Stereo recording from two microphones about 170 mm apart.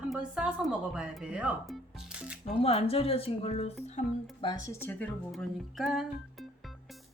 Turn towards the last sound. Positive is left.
turn(degrees=0)  # may be behind; listen again after turning